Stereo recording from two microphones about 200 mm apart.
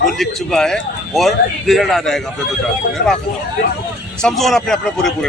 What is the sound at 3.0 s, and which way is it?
Speech, 50° left (ahead or behind).